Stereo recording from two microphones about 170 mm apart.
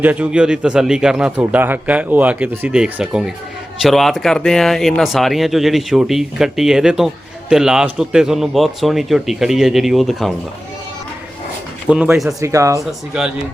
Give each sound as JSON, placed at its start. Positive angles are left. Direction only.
{"t": 0.0, "sound": "a man's voice", "side_deg": -10}
{"t": 11.9, "sound": "speech", "side_deg": -5}
{"t": 12.4, "sound": "a man's voice", "side_deg": -20}
{"t": 12.8, "sound": "speech", "side_deg": -5}